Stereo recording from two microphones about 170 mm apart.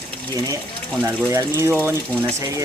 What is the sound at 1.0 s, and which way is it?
Speech, 15° right (ahead or behind).